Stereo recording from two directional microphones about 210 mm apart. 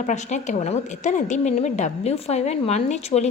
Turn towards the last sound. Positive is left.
turn(degrees=30)  # may be behind; listen again after turning